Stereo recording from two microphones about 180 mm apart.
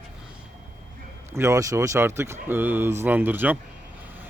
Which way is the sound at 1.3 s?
15° right (ahead or behind).